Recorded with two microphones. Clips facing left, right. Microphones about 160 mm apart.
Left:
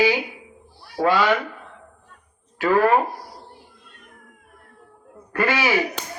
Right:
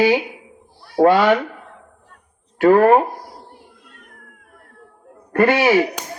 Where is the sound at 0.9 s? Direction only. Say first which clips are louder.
Right 6 dB; 55° right (ahead or behind).